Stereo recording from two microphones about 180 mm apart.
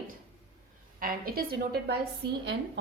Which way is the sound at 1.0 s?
55° right (ahead or behind).